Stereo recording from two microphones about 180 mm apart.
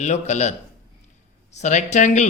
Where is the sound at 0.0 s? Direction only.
40° left (ahead or behind).